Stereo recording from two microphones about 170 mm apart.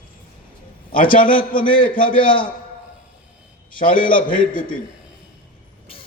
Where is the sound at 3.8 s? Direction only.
55° left (ahead or behind).